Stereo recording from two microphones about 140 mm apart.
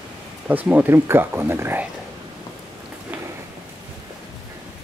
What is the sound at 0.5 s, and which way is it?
Speech, 10° right (ahead or behind).